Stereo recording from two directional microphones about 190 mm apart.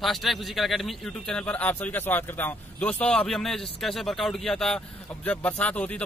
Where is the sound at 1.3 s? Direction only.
10° left (ahead or behind).